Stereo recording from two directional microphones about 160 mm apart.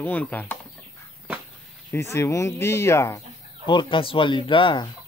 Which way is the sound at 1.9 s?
15° left (ahead or behind).